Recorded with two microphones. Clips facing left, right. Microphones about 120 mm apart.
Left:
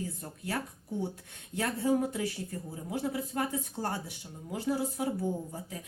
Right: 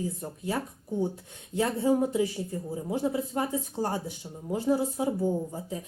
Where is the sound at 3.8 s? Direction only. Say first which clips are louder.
Right 5 dB; 15° right (ahead or behind).